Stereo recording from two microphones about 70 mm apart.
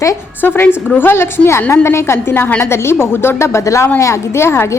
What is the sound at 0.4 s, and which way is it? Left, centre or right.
A woman's voice, left.